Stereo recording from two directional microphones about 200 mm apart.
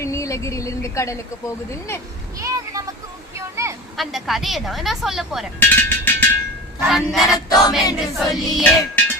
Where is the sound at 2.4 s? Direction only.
15° right (ahead or behind).